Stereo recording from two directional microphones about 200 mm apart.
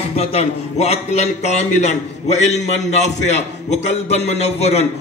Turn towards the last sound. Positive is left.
turn(degrees=30)  # may be behind; listen again after turning